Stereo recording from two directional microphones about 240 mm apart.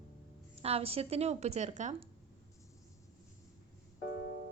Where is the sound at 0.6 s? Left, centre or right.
Right.